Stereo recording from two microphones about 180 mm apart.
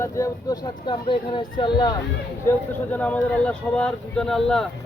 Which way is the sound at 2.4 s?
10° left (ahead or behind).